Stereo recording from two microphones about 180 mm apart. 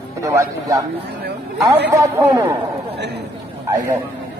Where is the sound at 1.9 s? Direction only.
15° right (ahead or behind).